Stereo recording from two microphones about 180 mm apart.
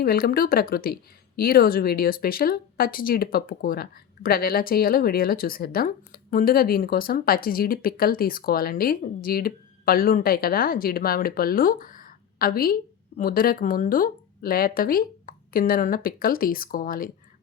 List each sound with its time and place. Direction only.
0.0 s speech: 55° left (ahead or behind)